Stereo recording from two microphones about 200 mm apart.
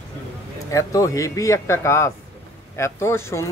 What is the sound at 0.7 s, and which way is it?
Speech, 15° left (ahead or behind).